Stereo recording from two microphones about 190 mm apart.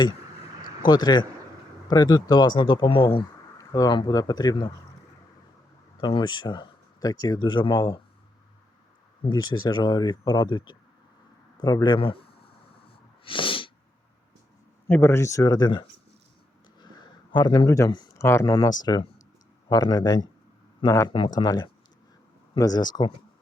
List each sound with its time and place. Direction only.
0.9 s speech: 20° left (ahead or behind)
6.0 s speech: 25° left (ahead or behind)
9.2 s speech: 20° left (ahead or behind)
13.2 s sneeze: 25° left (ahead or behind)
14.8 s speech: 10° left (ahead or behind)
17.3 s speech: 20° left (ahead or behind)